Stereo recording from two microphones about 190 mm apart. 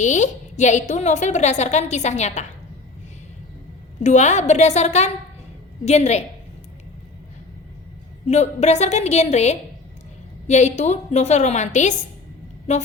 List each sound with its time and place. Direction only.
0.0 s a woman's voice: 40° left (ahead or behind)
4.0 s a woman's voice: 40° left (ahead or behind)
8.3 s a woman's voice: 35° left (ahead or behind)